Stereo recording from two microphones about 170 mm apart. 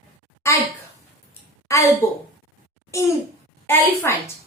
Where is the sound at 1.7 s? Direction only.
20° left (ahead or behind).